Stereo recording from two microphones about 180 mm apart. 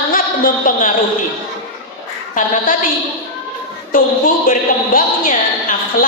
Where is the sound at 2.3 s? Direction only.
45° left (ahead or behind).